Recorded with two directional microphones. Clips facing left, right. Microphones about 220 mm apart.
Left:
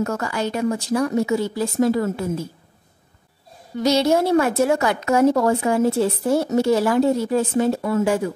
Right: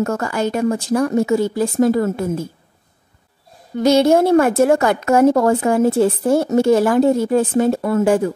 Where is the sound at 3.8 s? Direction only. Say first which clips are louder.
Right 5 dB; 50° right (ahead or behind).